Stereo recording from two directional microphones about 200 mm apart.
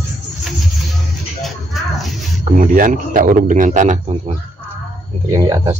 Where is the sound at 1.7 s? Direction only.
Centre (ahead or behind).